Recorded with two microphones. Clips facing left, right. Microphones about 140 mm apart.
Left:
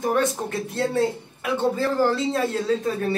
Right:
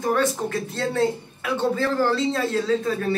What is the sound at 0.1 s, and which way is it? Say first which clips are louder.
Speech: right 3 dB; 20° left (ahead or behind).